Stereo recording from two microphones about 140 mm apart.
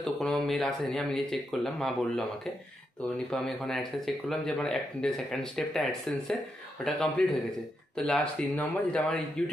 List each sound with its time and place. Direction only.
0.0 s speech: centre (ahead or behind)